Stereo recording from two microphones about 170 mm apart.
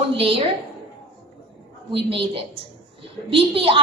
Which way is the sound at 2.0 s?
35° right (ahead or behind).